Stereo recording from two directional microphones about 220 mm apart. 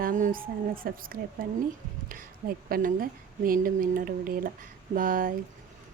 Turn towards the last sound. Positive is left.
turn(degrees=-40)  # may be behind; listen again after turning